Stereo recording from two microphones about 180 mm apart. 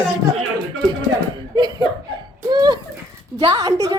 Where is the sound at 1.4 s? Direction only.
25° right (ahead or behind).